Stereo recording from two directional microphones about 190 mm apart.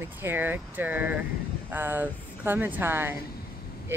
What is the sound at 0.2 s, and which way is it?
Speech, 10° right (ahead or behind).